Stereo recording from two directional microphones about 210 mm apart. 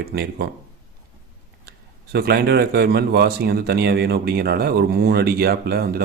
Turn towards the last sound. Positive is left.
turn(degrees=-45)  # may be behind; listen again after turning